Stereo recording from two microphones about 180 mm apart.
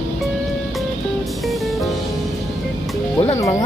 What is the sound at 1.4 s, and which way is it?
Music, centre (ahead or behind).